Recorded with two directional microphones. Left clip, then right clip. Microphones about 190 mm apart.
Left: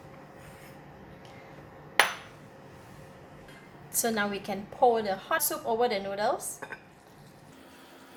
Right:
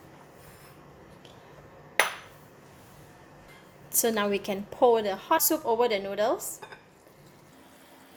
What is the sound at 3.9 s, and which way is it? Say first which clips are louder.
A woman's voice: right 3 dB; 40° right (ahead or behind).